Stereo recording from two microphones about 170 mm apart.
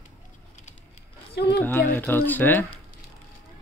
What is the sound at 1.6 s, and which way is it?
Speech, 10° left (ahead or behind).